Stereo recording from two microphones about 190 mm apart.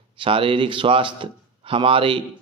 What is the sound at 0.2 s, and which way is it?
A man's voice, 25° right (ahead or behind).